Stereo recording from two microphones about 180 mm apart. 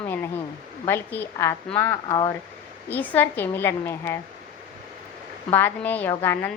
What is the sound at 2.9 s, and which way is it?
A woman's voice, 10° left (ahead or behind).